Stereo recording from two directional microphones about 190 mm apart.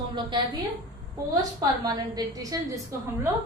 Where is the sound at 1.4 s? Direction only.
20° right (ahead or behind).